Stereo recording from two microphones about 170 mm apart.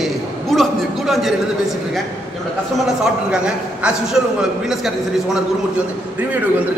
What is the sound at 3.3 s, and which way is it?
A man's voice, 5° right (ahead or behind).